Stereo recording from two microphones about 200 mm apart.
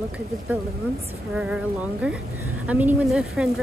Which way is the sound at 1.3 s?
5° right (ahead or behind).